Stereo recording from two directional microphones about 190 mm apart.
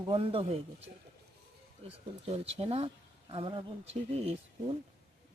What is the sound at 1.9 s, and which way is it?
Speech, 30° right (ahead or behind).